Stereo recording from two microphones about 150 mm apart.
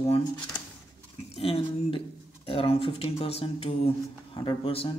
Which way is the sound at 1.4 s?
40° left (ahead or behind).